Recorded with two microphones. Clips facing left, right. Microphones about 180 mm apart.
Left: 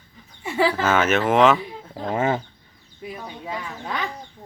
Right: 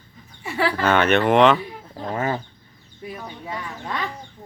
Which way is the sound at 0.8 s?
5° left (ahead or behind).